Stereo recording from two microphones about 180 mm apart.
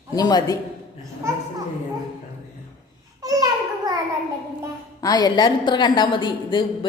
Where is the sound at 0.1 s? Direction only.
20° left (ahead or behind).